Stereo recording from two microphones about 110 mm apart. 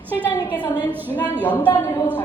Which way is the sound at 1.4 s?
15° left (ahead or behind).